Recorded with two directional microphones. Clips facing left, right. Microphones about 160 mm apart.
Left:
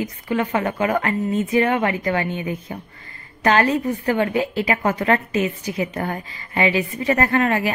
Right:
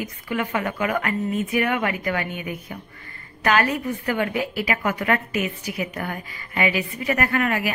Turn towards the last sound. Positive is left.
turn(degrees=30)  # may be behind; listen again after turning